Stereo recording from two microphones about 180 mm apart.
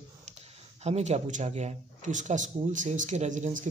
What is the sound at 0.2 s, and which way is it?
Speech, 35° right (ahead or behind).